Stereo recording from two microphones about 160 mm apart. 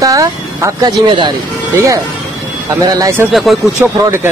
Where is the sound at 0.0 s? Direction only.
20° right (ahead or behind).